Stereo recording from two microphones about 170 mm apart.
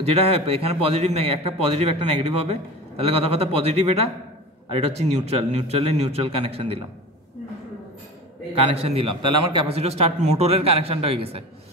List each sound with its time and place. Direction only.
0.0 s a man's voice: 35° right (ahead or behind)
8.5 s a man's voice: 35° right (ahead or behind)